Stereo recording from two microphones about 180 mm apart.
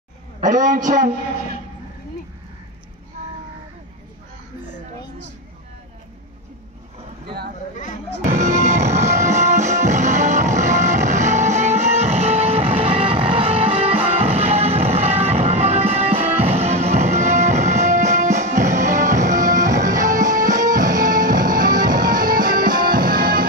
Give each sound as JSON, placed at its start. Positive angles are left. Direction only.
{"t": 0.4, "sound": "a man's voice", "side_deg": -45}
{"t": 8.3, "sound": "music", "side_deg": -40}